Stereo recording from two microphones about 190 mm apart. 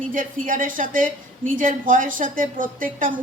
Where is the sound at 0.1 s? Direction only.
45° right (ahead or behind).